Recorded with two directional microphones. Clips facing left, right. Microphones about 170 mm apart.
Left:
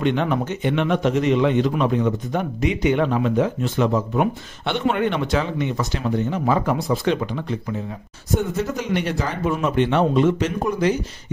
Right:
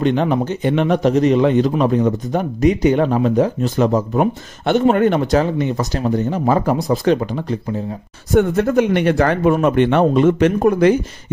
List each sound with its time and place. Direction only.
0.0 s a man's voice: 35° right (ahead or behind)
8.4 s speech: 60° right (ahead or behind)